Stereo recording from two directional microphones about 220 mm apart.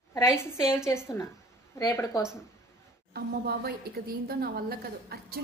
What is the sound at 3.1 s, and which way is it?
A woman's voice, 45° right (ahead or behind).